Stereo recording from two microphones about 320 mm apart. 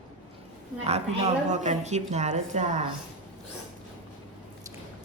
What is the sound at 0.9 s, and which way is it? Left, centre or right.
A woman's voice, centre.